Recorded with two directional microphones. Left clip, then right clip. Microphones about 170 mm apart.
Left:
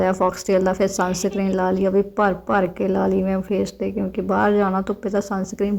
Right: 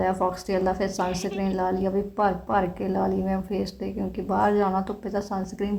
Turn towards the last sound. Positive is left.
turn(degrees=25)  # may be behind; listen again after turning